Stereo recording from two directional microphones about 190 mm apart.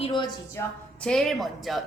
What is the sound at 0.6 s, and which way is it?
Speech, 15° left (ahead or behind).